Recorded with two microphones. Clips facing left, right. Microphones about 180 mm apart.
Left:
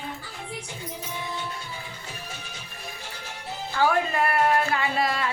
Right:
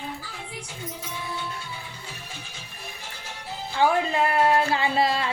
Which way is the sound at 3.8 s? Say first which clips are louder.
Right 1 dB; 20° right (ahead or behind).